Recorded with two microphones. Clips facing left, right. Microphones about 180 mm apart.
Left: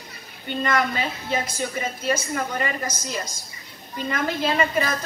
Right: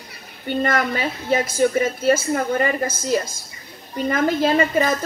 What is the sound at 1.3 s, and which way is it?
A woman's voice, 50° right (ahead or behind).